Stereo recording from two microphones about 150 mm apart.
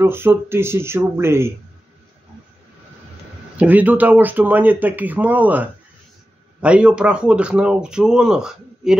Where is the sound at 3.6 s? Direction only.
10° right (ahead or behind).